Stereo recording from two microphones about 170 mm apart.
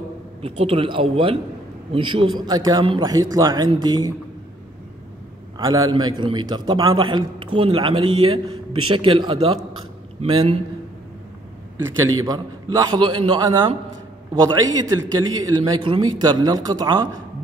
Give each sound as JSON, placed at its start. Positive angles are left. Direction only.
{"t": 0.4, "sound": "a man's voice", "side_deg": -35}
{"t": 5.6, "sound": "a man's voice", "side_deg": -20}
{"t": 11.8, "sound": "a man's voice", "side_deg": -20}